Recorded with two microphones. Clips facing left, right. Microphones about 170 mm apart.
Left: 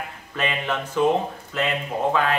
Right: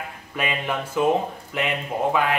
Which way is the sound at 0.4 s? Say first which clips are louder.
Even; 10° right (ahead or behind).